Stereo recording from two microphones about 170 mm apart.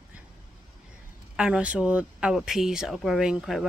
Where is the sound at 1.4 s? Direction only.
5° right (ahead or behind).